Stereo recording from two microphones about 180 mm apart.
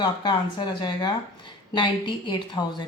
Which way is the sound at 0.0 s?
25° left (ahead or behind).